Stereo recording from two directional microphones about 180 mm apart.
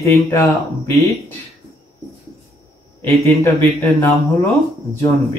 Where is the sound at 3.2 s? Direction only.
15° left (ahead or behind).